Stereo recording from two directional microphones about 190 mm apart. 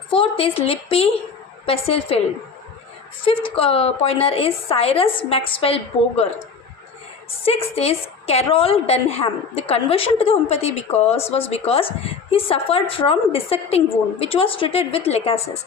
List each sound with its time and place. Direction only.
0.1 s a woman's voice: 30° left (ahead or behind)
3.2 s a woman's voice: 30° left (ahead or behind)
7.4 s a woman's voice: 30° left (ahead or behind)